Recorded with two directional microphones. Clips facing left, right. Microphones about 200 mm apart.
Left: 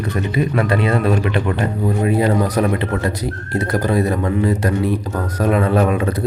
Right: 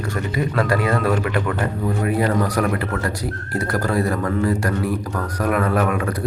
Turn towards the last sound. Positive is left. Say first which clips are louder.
# left 4 dB
turn(degrees=25)  # may be behind; listen again after turning